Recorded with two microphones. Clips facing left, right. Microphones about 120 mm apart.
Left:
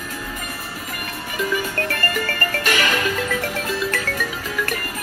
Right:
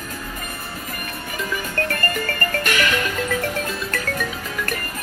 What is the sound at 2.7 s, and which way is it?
Music, 35° left (ahead or behind).